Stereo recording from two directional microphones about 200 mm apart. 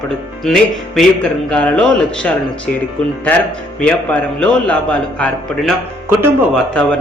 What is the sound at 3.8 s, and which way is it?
Speech, 5° left (ahead or behind).